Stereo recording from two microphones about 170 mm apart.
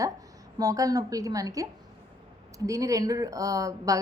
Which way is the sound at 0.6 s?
20° right (ahead or behind).